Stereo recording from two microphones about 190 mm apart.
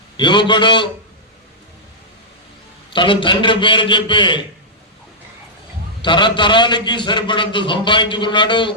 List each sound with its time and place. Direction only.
0.2 s a man's voice: 25° left (ahead or behind)
2.9 s a man's voice: 25° left (ahead or behind)
6.0 s a man's voice: 25° left (ahead or behind)